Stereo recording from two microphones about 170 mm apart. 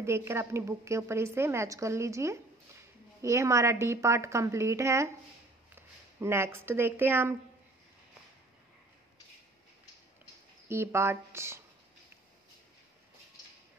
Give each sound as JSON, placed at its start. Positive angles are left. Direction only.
{"t": 0.0, "sound": "a woman's voice", "side_deg": -15}
{"t": 10.7, "sound": "a woman's voice", "side_deg": -15}